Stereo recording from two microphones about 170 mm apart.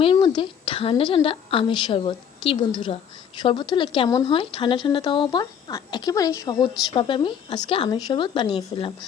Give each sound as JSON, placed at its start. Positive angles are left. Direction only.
{"t": 0.0, "sound": "a woman's voice", "side_deg": 30}